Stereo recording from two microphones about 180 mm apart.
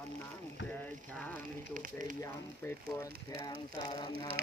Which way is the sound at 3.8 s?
25° left (ahead or behind).